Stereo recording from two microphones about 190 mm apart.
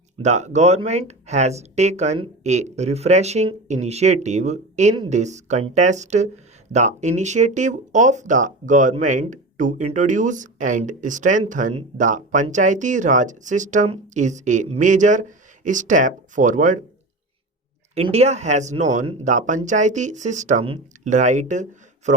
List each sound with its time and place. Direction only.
0.2 s speech: 40° right (ahead or behind)
17.9 s speech: 35° right (ahead or behind)